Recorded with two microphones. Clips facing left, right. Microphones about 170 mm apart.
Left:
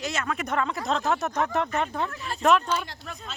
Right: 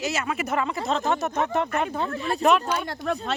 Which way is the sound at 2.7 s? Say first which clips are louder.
Right 5 dB; 60° right (ahead or behind).